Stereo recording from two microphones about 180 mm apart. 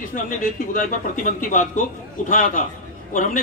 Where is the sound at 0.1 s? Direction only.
50° left (ahead or behind).